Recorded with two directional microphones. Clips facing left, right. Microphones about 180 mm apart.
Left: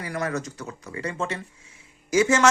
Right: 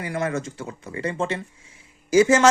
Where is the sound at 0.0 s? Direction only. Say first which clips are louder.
Right 2 dB; 25° right (ahead or behind).